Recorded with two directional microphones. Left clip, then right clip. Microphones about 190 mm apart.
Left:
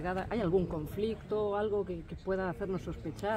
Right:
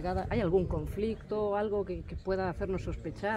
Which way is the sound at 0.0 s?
65° right (ahead or behind).